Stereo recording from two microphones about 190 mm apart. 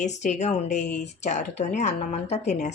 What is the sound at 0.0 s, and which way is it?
A woman's voice, 40° left (ahead or behind).